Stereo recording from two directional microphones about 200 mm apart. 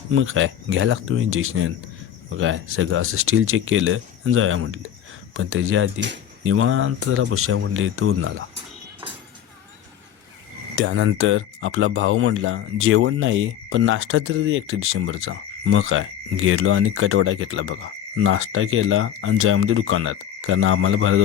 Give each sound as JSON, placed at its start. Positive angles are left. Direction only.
{"t": 0.1, "sound": "speech", "side_deg": -90}
{"t": 10.8, "sound": "speech", "side_deg": -80}